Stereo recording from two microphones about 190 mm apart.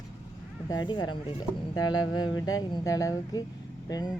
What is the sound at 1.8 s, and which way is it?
Speech, 90° left.